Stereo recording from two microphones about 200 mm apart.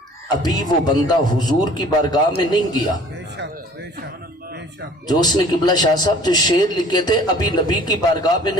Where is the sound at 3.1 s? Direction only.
60° right (ahead or behind).